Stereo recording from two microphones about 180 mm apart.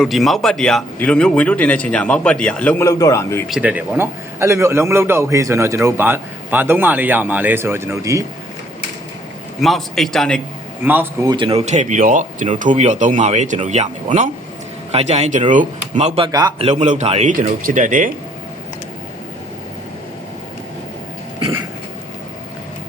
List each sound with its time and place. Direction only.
0.0 s speech: centre (ahead or behind); by 3.4 s 15° left (ahead or behind)
3.5 s a man's voice: 5° right (ahead or behind)
9.6 s a man's voice: centre (ahead or behind)
10.8 s a man's voice: 10° right (ahead or behind)
11.3 s speech: 30° right (ahead or behind)
16.6 s speech: 40° right (ahead or behind)